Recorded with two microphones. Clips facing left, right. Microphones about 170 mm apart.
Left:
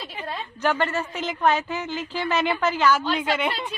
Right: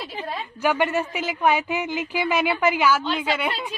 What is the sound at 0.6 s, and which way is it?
A woman's voice, 10° right (ahead or behind).